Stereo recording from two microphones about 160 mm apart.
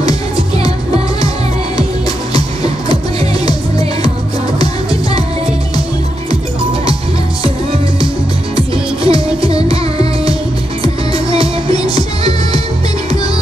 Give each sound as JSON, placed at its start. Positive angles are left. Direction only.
{"t": 8.5, "sound": "music", "side_deg": -35}
{"t": 11.8, "sound": "music", "side_deg": 25}